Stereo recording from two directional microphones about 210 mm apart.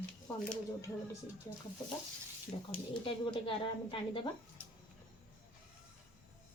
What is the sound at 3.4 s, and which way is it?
Speech, 25° left (ahead or behind).